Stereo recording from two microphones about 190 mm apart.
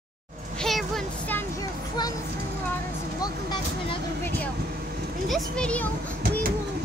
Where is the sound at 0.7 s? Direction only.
Centre (ahead or behind).